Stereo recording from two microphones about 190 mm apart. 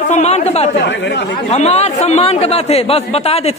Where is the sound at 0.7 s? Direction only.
70° left (ahead or behind).